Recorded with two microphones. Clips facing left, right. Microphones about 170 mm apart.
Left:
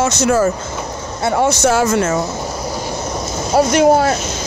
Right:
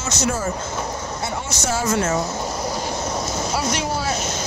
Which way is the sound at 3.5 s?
55° left (ahead or behind).